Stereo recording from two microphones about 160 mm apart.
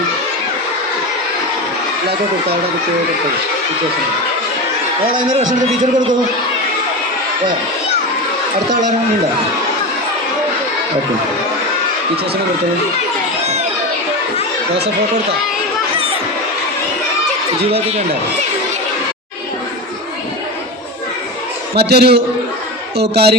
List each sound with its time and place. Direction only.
5.4 s a man's voice: 50° right (ahead or behind)
17.7 s speech: 40° right (ahead or behind)
21.8 s a man's voice: 90° right